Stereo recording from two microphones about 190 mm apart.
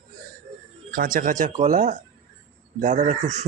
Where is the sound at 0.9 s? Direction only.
50° right (ahead or behind).